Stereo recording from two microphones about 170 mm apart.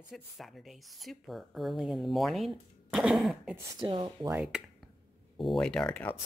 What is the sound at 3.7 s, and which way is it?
Speech, 25° right (ahead or behind).